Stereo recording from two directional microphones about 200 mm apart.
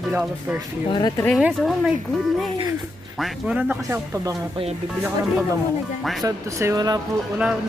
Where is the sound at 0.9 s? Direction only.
20° left (ahead or behind).